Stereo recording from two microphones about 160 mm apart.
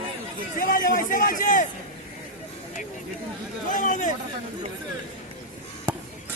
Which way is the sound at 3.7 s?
55° left (ahead or behind).